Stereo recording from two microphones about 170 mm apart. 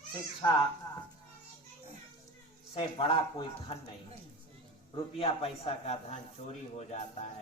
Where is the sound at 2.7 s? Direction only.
30° left (ahead or behind).